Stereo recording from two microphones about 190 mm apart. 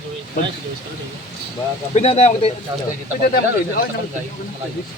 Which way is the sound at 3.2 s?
50° left (ahead or behind).